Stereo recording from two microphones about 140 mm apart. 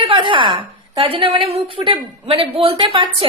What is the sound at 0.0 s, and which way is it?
A woman's voice, 35° right (ahead or behind).